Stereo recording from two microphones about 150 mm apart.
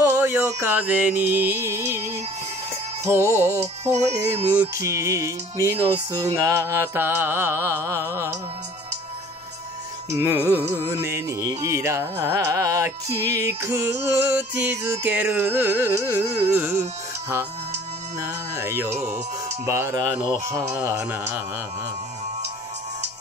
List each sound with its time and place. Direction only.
0.0 s music: 15° right (ahead or behind)
3.3 s mantra: 20° right (ahead or behind)
3.8 s music: 45° right (ahead or behind)
4.7 s music: 20° right (ahead or behind)
6.1 s mantra: 20° right (ahead or behind)
10.1 s mantra: 15° right (ahead or behind)
10.8 s music: 15° right (ahead or behind)
18.2 s music: 20° right (ahead or behind)
20.7 s mantra: 15° right (ahead or behind)